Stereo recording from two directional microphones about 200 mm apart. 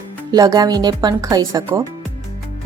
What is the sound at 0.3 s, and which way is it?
Speech, 20° right (ahead or behind).